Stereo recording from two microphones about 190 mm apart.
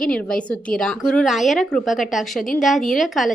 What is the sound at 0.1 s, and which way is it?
A woman's voice, 5° left (ahead or behind).